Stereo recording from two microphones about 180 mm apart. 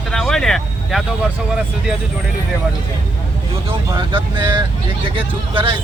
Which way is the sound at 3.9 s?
25° right (ahead or behind).